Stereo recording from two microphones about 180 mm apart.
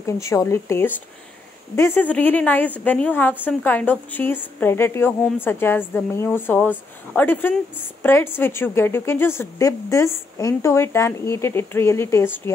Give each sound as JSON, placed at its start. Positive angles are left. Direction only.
{"t": 0.0, "sound": "a woman's voice", "side_deg": 15}